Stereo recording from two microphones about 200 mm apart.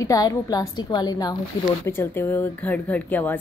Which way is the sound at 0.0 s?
15° left (ahead or behind).